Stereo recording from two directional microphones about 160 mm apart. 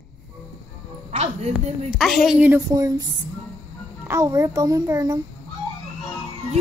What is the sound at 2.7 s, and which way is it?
Speech, 25° right (ahead or behind).